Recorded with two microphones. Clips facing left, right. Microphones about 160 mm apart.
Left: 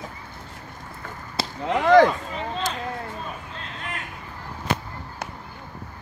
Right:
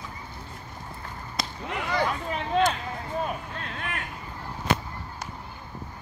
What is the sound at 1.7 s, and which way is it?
Whip, 90° left.